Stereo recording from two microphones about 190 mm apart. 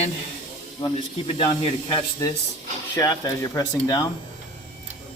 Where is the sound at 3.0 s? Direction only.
15° left (ahead or behind).